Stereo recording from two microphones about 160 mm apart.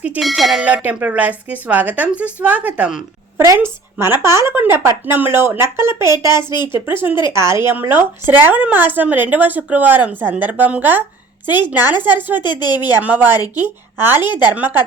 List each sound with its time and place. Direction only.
0.0 s speech: centre (ahead or behind)
12.4 s a woman's voice: 25° left (ahead or behind)
13.0 s speech: 10° right (ahead or behind)